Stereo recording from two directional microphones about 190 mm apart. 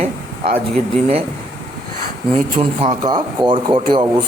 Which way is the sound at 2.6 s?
25° right (ahead or behind).